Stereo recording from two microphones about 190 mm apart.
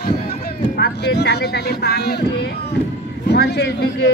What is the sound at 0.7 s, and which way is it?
Speech, 60° left (ahead or behind).